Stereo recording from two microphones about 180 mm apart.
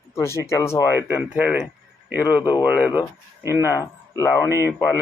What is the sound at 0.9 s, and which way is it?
Speech, 10° right (ahead or behind).